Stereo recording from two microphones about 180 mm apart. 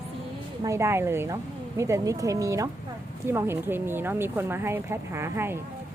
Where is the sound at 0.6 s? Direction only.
15° right (ahead or behind).